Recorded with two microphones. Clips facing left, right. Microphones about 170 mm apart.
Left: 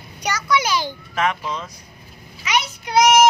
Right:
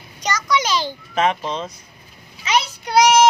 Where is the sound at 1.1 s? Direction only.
20° right (ahead or behind).